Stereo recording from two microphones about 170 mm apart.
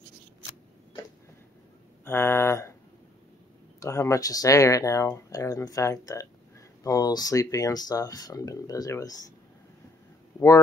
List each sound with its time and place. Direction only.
2.0 s speech: 15° left (ahead or behind)
3.8 s speech: 20° left (ahead or behind)